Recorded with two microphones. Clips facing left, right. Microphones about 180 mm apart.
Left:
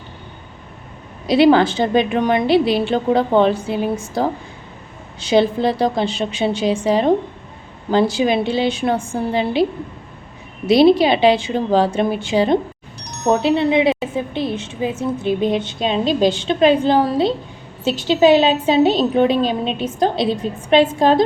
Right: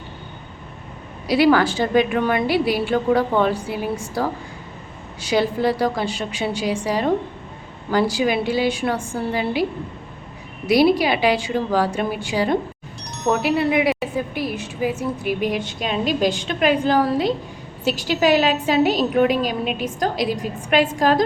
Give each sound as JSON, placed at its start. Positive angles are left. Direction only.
{"t": 1.3, "sound": "a woman's voice", "side_deg": 25}
{"t": 10.7, "sound": "a woman's voice", "side_deg": 25}